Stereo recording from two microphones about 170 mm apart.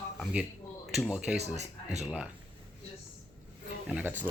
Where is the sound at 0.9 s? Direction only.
5° right (ahead or behind).